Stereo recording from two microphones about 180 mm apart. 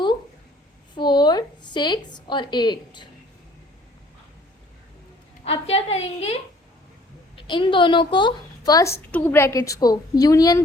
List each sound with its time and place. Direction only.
0.9 s a sound: 25° left (ahead or behind)
2.1 s a woman's voice: 25° left (ahead or behind)
5.5 s a woman's voice: 35° left (ahead or behind)
7.3 s a woman's voice: 25° left (ahead or behind)